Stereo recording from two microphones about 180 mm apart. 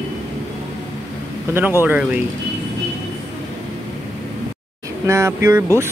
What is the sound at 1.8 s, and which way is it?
Speech, 10° right (ahead or behind).